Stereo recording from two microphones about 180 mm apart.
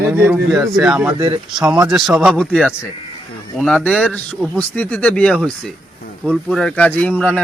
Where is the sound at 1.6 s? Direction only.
5° right (ahead or behind).